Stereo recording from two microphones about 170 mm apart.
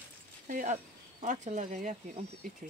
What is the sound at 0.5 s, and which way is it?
Speech, 50° right (ahead or behind).